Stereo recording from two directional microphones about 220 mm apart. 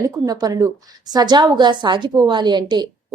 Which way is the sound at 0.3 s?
15° right (ahead or behind).